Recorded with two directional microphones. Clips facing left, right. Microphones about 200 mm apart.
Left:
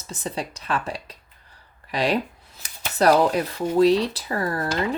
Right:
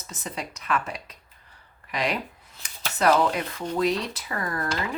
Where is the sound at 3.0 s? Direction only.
35° left (ahead or behind).